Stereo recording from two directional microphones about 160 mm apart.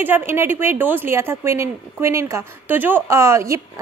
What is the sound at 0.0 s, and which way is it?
A woman's voice, 15° right (ahead or behind).